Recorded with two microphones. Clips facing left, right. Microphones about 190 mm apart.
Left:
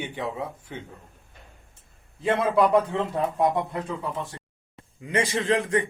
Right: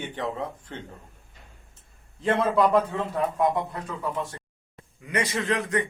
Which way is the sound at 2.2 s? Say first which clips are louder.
Left 1 dB; 10° left (ahead or behind).